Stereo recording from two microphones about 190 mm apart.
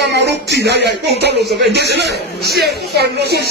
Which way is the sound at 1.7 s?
60° right (ahead or behind).